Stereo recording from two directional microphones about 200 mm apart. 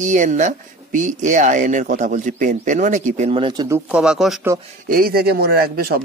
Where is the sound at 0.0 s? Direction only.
40° right (ahead or behind).